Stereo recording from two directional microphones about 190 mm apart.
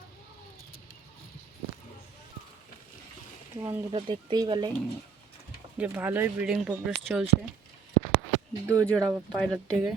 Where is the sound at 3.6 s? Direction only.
15° right (ahead or behind).